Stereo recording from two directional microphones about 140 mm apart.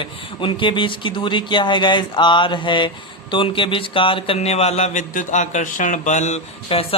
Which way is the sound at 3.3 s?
35° left (ahead or behind).